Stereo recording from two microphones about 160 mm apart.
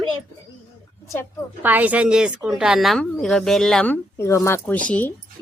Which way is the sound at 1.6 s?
10° right (ahead or behind).